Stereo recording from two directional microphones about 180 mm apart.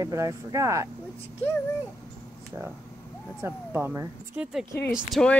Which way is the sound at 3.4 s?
10° right (ahead or behind).